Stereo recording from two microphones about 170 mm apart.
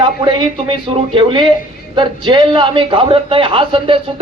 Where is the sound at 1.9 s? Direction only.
25° right (ahead or behind).